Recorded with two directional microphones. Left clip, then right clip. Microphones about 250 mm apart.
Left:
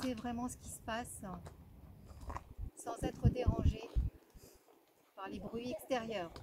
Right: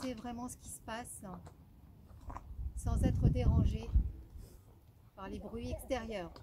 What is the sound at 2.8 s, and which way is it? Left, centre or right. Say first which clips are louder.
Speech: right 1 dB; centre.